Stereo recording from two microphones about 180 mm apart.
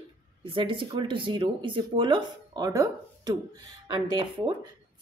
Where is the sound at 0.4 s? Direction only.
30° right (ahead or behind).